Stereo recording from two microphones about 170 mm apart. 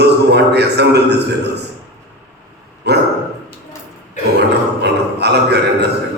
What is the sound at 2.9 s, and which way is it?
Dog, 80° right.